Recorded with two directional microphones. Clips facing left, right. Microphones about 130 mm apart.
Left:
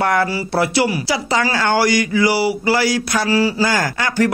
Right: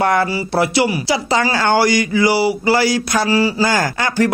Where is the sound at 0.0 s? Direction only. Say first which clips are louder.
Right 1 dB; 25° right (ahead or behind).